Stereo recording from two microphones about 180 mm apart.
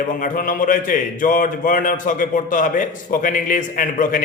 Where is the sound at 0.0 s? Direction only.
50° left (ahead or behind).